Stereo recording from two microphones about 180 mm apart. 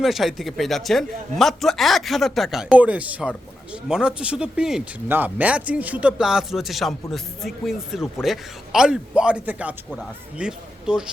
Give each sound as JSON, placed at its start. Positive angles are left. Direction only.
{"t": 0.0, "sound": "speech", "side_deg": 0}